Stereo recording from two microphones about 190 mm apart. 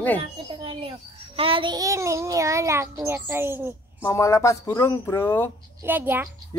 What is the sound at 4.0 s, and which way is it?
Speech, 15° left (ahead or behind).